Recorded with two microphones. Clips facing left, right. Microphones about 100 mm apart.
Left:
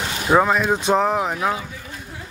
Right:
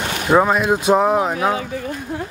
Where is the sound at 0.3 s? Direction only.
10° right (ahead or behind).